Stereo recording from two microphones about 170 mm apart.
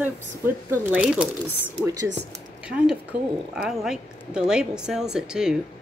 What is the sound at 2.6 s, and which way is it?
A woman's voice, 5° right (ahead or behind).